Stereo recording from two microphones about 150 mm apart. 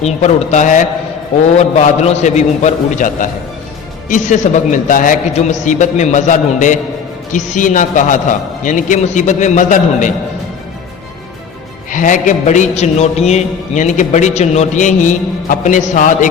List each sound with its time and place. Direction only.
0.0 s a man's voice: 50° left (ahead or behind)
1.5 s a man's voice: 45° left (ahead or behind)
11.9 s a man's voice: 60° left (ahead or behind)